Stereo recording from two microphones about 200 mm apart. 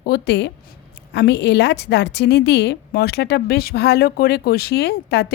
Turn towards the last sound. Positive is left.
turn(degrees=55)  # may be behind; listen again after turning